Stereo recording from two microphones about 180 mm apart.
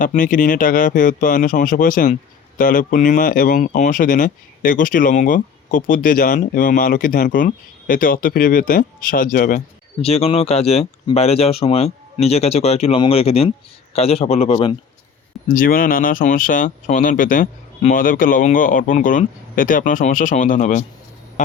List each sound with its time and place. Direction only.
0.0 s a man's voice: 45° left (ahead or behind)
15.4 s speech: 50° left (ahead or behind)